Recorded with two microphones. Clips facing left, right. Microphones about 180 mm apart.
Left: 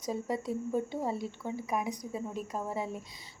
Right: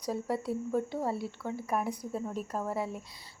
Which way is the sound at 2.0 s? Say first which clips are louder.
Right 2 dB; 5° right (ahead or behind).